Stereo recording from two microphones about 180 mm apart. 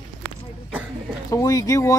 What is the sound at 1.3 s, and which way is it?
Speech, 20° left (ahead or behind).